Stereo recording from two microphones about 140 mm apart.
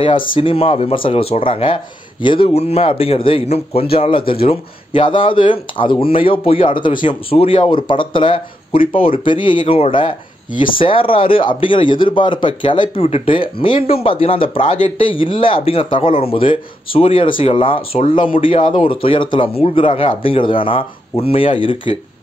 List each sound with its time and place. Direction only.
0.4 s a man's voice: 40° left (ahead or behind)